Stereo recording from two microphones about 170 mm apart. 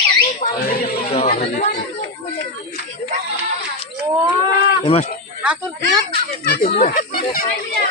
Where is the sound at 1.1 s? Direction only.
35° left (ahead or behind).